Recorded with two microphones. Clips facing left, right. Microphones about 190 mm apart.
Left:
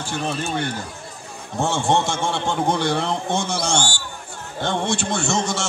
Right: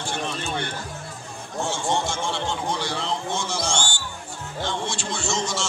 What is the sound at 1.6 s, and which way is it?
A man's voice, 60° left (ahead or behind).